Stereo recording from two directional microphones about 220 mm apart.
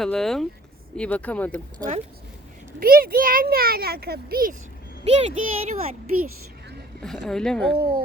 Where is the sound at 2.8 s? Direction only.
40° right (ahead or behind).